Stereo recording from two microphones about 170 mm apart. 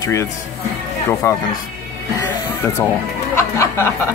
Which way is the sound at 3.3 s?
15° left (ahead or behind).